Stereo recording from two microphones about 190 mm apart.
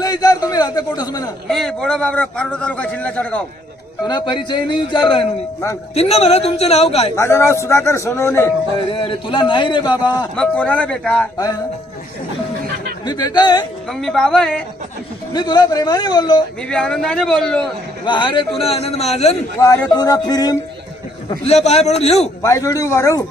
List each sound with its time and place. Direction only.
0.0 s a sound: 20° left (ahead or behind)
1.5 s a man's voice: centre (ahead or behind)
4.1 s a man's voice: 25° left (ahead or behind)
7.2 s a man's voice: 15° left (ahead or behind)
8.7 s a man's voice: 25° left (ahead or behind)
10.3 s a man's voice: 5° left (ahead or behind)
13.0 s a man's voice: 20° left (ahead or behind)
14.0 s a man's voice: 5° left (ahead or behind)
15.3 s a man's voice: 20° left (ahead or behind)
16.6 s a man's voice: 5° left (ahead or behind)
18.0 s a man's voice: 25° left (ahead or behind)
19.6 s a man's voice: 20° left (ahead or behind)
21.3 s a man's voice: 35° left (ahead or behind)
22.4 s a man's voice: 15° left (ahead or behind)